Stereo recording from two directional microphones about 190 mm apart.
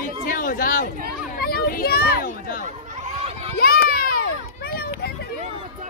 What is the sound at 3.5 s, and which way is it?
Children playing, 50° left (ahead or behind).